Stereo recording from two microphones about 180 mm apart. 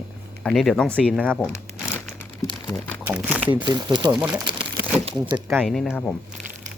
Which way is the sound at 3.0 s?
10° right (ahead or behind).